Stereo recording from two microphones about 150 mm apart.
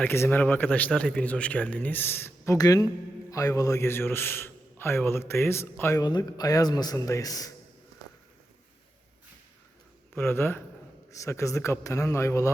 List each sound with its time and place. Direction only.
0.0 s a man's voice: 15° left (ahead or behind)
10.2 s a man's voice: 15° left (ahead or behind)